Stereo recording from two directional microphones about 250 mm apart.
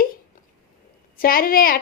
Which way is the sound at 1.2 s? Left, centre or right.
Left.